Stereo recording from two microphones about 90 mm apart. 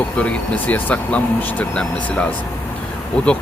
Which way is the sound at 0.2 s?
15° left (ahead or behind).